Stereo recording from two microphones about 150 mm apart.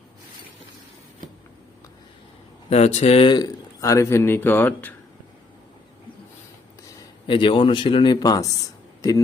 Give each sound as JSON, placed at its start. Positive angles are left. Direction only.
{"t": 2.6, "sound": "speech", "side_deg": 45}
{"t": 7.3, "sound": "speech", "side_deg": 35}
{"t": 9.0, "sound": "a sound", "side_deg": 25}